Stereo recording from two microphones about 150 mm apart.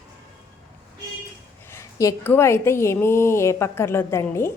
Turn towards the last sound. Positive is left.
turn(degrees=15)  # may be behind; listen again after turning